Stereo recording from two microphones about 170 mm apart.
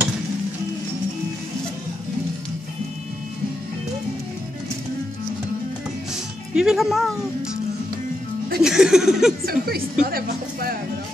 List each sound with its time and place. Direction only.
6.5 s speech: 5° right (ahead or behind)
8.6 s speech: 5° right (ahead or behind)
9.5 s speech: 60° right (ahead or behind)